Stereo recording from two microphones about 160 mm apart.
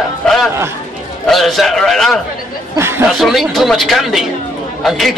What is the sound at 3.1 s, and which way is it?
A man's voice, centre (ahead or behind).